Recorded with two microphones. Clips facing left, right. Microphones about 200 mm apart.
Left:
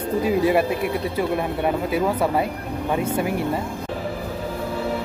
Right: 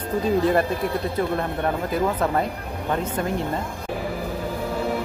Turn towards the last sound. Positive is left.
turn(degrees=10)  # may be behind; listen again after turning